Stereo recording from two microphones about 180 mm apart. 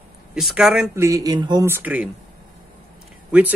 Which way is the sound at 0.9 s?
15° right (ahead or behind).